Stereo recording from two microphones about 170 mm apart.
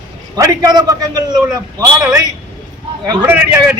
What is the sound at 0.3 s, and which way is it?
A man's voice, 20° right (ahead or behind).